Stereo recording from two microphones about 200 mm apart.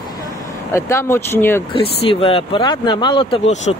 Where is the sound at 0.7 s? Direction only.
15° left (ahead or behind).